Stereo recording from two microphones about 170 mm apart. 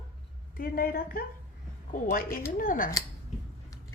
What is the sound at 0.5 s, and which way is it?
A woman's voice, 55° left (ahead or behind).